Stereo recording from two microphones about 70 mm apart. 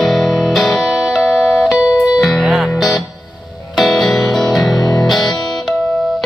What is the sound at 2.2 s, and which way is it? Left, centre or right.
Music, centre.